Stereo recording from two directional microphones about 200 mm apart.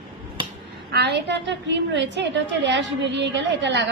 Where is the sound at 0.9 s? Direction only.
55° right (ahead or behind).